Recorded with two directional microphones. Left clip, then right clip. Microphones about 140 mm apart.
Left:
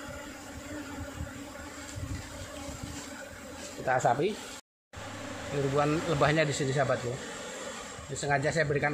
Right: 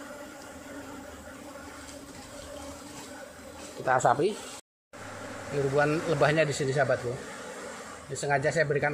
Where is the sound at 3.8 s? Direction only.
15° right (ahead or behind).